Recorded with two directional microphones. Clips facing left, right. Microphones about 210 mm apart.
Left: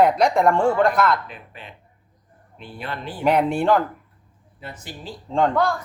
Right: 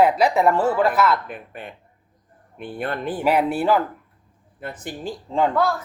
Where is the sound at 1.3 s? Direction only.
50° right (ahead or behind).